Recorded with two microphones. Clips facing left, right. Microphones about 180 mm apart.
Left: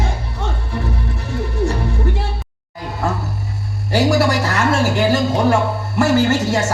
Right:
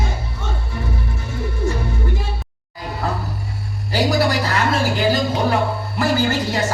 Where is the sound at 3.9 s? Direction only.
70° left (ahead or behind).